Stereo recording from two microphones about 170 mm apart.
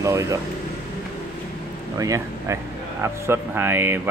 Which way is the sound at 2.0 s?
20° right (ahead or behind).